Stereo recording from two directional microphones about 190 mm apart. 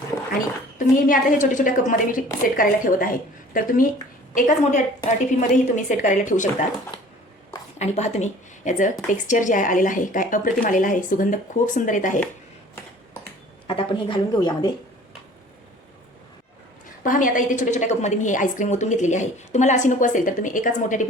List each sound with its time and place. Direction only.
0.3 s a woman's voice: 45° left (ahead or behind)
7.8 s speech: 35° left (ahead or behind)
13.7 s a woman's voice: 25° left (ahead or behind)
17.0 s a woman's voice: 45° left (ahead or behind)